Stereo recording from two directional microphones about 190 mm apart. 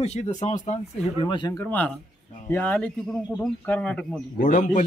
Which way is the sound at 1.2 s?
25° left (ahead or behind).